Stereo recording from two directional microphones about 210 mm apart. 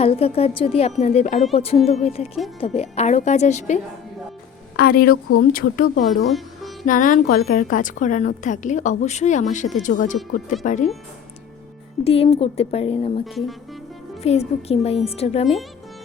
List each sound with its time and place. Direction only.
0.0 s a woman's voice: 30° left (ahead or behind)
4.8 s speech: 45° left (ahead or behind)
6.3 s music: centre (ahead or behind)
6.8 s a woman's voice: 40° left (ahead or behind)
12.0 s speech: 30° left (ahead or behind)